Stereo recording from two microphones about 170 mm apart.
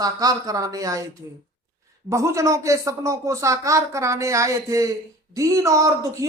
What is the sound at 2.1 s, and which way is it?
Speech, 20° right (ahead or behind).